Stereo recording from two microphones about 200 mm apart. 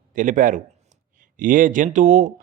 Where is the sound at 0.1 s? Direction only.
40° right (ahead or behind).